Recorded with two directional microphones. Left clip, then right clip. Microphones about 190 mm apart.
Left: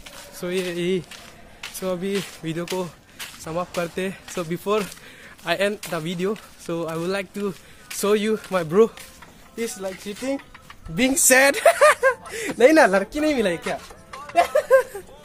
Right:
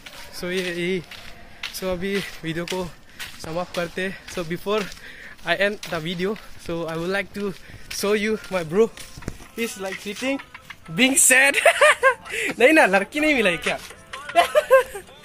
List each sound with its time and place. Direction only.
0.3 s speech: 10° left (ahead or behind)
1.1 s speech: 5° left (ahead or behind)
9.6 s speech: 35° right (ahead or behind)
9.9 s speech: 25° right (ahead or behind)
11.2 s a sound: 10° left (ahead or behind)
12.4 s speech: 10° left (ahead or behind)
14.1 s speech: 10° right (ahead or behind)